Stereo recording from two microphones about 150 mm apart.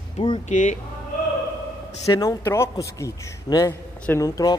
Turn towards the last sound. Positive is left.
turn(degrees=25)  # may be behind; listen again after turning